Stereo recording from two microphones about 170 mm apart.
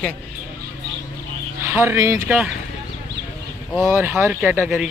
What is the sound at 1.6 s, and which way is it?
Speech, 15° right (ahead or behind).